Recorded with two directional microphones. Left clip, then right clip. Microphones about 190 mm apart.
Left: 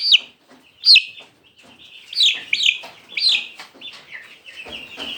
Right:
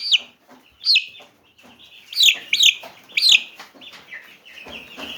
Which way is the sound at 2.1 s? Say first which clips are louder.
Right 2 dB; 40° right (ahead or behind).